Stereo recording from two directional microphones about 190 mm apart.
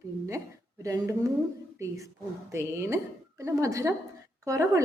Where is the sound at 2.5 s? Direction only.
15° right (ahead or behind).